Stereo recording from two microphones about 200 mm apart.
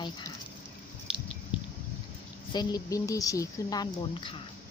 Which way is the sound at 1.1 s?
5° right (ahead or behind).